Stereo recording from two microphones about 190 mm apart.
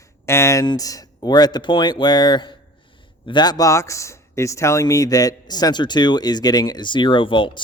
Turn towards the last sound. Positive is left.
turn(degrees=25)  # may be behind; listen again after turning